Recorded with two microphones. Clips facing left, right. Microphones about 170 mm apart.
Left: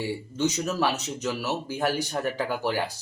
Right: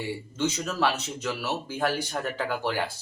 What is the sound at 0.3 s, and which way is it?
Speech, 15° left (ahead or behind).